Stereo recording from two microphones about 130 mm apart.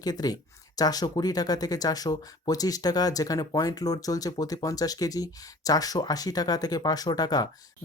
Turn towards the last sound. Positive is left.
turn(degrees=30)  # may be behind; listen again after turning